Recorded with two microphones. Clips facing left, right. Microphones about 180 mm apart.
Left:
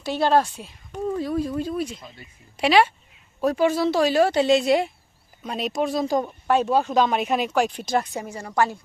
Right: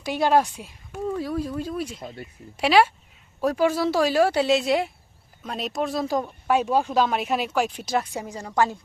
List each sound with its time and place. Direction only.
0.0 s speech: 15° right (ahead or behind)
2.0 s speech: 50° right (ahead or behind)
2.6 s speech: 5° right (ahead or behind)
6.5 s speech: 10° right (ahead or behind)